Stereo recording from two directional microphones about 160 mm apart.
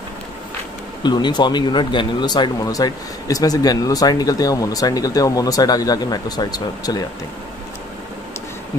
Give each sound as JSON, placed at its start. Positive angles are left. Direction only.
{"t": 1.0, "sound": "speech", "side_deg": 25}